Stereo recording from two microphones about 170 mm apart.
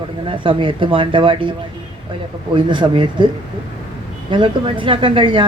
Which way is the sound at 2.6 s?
30° right (ahead or behind).